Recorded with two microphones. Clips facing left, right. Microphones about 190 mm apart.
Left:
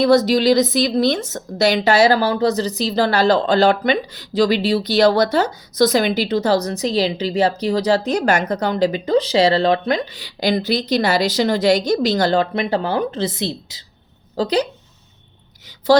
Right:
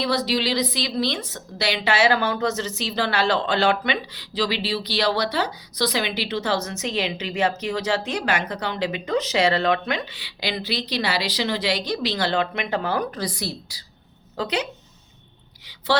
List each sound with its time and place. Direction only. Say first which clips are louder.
0.0 s a woman's voice: left 9 dB; 45° left (ahead or behind); by 13.8 s 20° left (ahead or behind)
14.3 s a woman's voice: left 7 dB; 35° left (ahead or behind)